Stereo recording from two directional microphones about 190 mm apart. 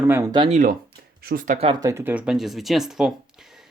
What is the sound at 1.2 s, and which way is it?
Speech, 50° right (ahead or behind).